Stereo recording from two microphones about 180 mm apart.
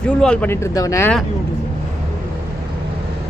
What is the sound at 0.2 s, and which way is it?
Speech, 10° left (ahead or behind).